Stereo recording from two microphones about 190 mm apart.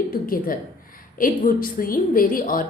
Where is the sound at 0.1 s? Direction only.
50° left (ahead or behind).